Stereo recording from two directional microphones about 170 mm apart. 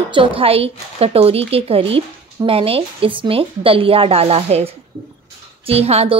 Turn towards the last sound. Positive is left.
turn(degrees=-35)  # may be behind; listen again after turning